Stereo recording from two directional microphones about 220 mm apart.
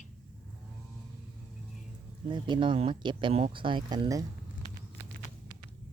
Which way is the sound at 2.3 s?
20° right (ahead or behind).